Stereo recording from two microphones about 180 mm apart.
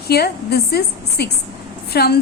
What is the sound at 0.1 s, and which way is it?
A woman's voice, 60° left (ahead or behind).